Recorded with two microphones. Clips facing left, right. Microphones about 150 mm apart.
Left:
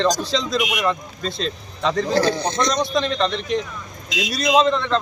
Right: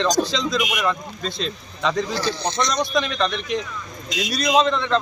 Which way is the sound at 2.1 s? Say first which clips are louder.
Left 5 dB; 50° left (ahead or behind).